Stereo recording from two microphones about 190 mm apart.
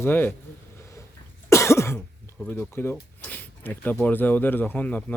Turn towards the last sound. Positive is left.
turn(degrees=10)  # may be behind; listen again after turning